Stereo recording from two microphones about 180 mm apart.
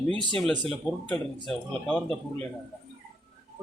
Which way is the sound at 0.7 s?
5° left (ahead or behind).